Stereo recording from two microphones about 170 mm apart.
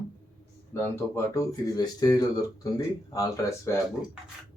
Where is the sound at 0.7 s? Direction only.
15° left (ahead or behind).